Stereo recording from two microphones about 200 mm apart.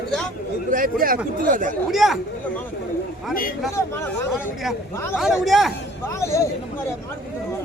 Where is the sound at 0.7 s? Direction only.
45° right (ahead or behind).